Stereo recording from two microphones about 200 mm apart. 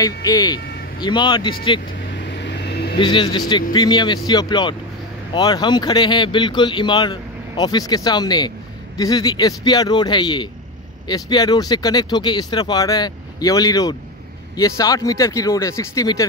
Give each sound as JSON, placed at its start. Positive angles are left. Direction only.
{"t": 0.0, "sound": "speech", "side_deg": 20}
{"t": 2.1, "sound": "vehicle", "side_deg": 60}
{"t": 3.0, "sound": "speech", "side_deg": 25}